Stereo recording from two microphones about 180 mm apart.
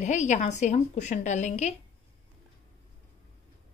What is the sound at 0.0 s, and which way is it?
A woman's voice, 40° left (ahead or behind).